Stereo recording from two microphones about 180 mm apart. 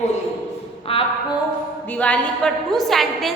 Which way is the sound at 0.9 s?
30° left (ahead or behind).